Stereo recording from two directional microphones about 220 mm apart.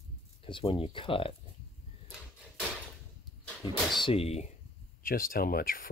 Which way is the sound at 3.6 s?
25° left (ahead or behind).